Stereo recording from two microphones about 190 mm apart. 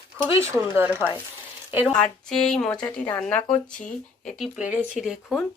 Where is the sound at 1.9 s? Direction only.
5° left (ahead or behind).